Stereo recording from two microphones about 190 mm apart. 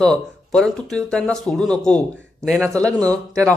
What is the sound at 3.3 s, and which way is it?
Speech, 15° right (ahead or behind).